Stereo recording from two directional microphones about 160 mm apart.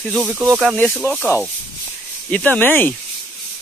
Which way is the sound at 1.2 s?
10° left (ahead or behind).